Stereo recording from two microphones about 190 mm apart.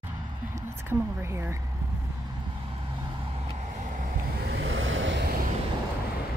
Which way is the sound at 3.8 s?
45° right (ahead or behind).